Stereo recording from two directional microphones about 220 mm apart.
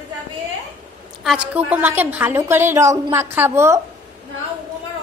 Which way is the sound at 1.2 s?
5° right (ahead or behind).